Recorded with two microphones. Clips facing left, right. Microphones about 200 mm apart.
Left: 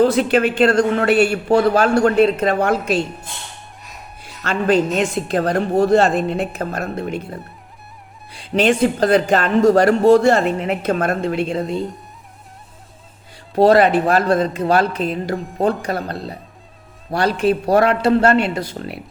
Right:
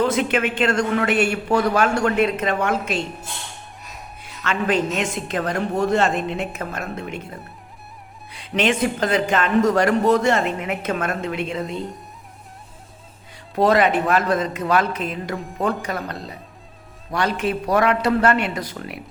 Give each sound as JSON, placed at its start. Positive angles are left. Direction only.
{"t": 0.0, "sound": "speech", "side_deg": 35}
{"t": 4.4, "sound": "speech", "side_deg": 35}
{"t": 8.5, "sound": "speech", "side_deg": 35}
{"t": 13.6, "sound": "speech", "side_deg": 35}